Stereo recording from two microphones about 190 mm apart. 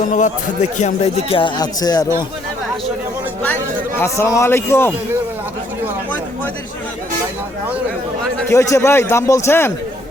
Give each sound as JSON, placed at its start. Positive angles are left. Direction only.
{"t": 0.0, "sound": "speech", "side_deg": 40}
{"t": 3.4, "sound": "speech", "side_deg": 10}
{"t": 8.4, "sound": "a man's voice", "side_deg": 15}